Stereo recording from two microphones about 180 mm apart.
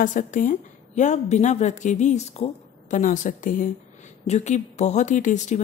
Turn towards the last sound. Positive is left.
turn(degrees=40)  # may be behind; listen again after turning